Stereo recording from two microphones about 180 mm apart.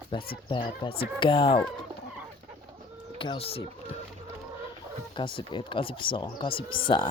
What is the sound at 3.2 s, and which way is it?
Speech, 30° left (ahead or behind).